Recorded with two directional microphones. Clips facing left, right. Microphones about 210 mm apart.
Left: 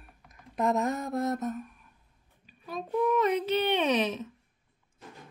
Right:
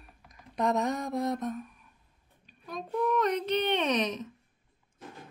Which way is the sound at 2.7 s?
5° left (ahead or behind).